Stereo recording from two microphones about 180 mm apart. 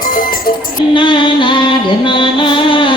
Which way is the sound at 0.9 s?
25° left (ahead or behind).